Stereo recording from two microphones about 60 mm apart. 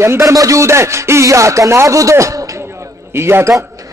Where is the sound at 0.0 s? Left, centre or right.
Right.